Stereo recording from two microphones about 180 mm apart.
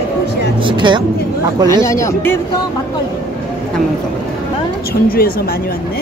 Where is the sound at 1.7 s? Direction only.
15° left (ahead or behind).